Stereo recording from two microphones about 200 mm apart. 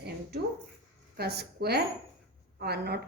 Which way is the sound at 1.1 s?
55° right (ahead or behind).